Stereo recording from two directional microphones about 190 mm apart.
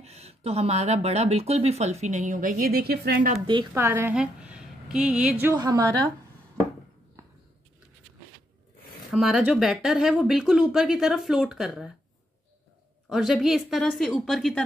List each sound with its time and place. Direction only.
0.0 s speech: 35° right (ahead or behind); by 3.3 s 50° right (ahead or behind)
3.7 s a woman's voice: 15° right (ahead or behind)
9.1 s speech: centre (ahead or behind)
13.1 s speech: centre (ahead or behind)